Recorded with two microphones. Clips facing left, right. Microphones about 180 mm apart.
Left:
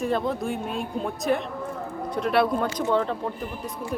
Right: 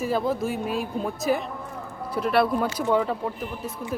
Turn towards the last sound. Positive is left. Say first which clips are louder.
# right 1 dB
turn(degrees=-10)  # may be behind; listen again after turning